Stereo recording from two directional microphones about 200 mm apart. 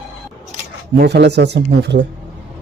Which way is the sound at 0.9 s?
55° right (ahead or behind).